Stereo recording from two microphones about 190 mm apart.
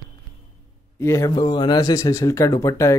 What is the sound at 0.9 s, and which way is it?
Speech, 15° left (ahead or behind).